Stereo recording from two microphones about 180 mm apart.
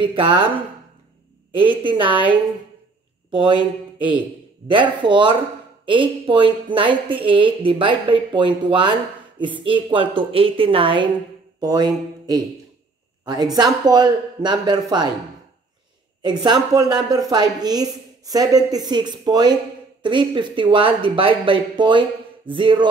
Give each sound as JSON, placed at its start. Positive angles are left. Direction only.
{"t": 0.0, "sound": "a woman's voice", "side_deg": -25}
{"t": 1.5, "sound": "a woman's voice", "side_deg": -30}
{"t": 3.3, "sound": "speech", "side_deg": -25}
{"t": 4.6, "sound": "a woman's voice", "side_deg": -25}
{"t": 16.2, "sound": "a woman's voice", "side_deg": -25}